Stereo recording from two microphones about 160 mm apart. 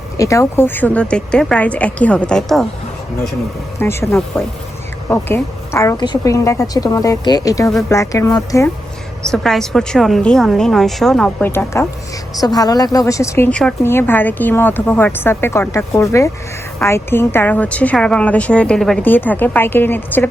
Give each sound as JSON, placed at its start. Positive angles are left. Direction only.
{"t": 0.2, "sound": "a woman's voice", "side_deg": 20}
{"t": 3.8, "sound": "a woman's voice", "side_deg": 15}
{"t": 9.3, "sound": "a woman's voice", "side_deg": 5}
{"t": 13.5, "sound": "a woman's voice", "side_deg": 5}